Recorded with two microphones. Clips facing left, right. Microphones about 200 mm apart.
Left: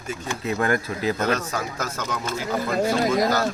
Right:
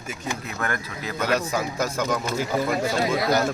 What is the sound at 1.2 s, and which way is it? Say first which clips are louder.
Speech: even; 10° right (ahead or behind).